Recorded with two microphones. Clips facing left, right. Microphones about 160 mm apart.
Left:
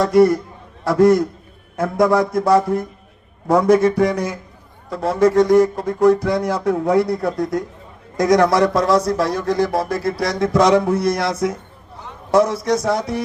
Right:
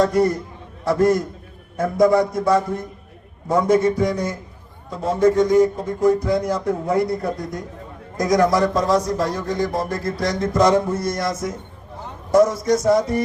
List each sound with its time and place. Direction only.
0.0 s speech: 85° left